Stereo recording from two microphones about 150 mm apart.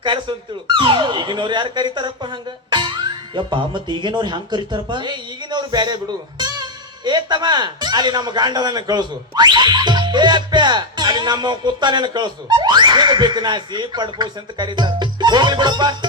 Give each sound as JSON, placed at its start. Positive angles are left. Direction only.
{"t": 0.0, "sound": "speech", "side_deg": -35}